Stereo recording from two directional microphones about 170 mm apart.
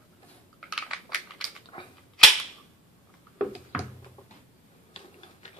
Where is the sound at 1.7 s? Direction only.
30° left (ahead or behind).